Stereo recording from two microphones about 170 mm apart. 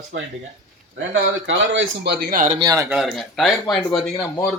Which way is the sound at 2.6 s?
20° right (ahead or behind).